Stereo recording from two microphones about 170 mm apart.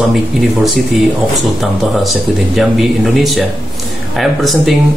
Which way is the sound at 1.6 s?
Centre (ahead or behind).